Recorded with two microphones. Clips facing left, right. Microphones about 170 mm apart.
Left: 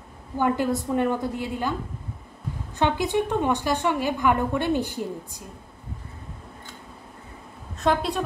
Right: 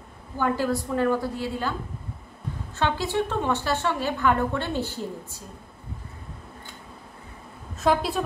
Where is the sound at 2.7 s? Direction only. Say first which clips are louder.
Left 2 dB; 15° left (ahead or behind).